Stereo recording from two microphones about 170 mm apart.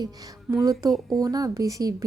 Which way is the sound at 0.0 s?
20° right (ahead or behind).